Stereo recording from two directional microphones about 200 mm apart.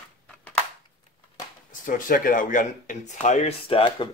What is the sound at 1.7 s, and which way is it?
Speech, 40° left (ahead or behind).